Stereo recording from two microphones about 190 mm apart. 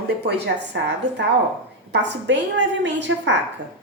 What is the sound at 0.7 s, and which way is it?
A woman's voice, 65° right (ahead or behind).